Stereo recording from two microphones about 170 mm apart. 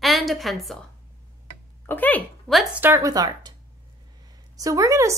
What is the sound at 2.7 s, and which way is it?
Speech, 15° right (ahead or behind).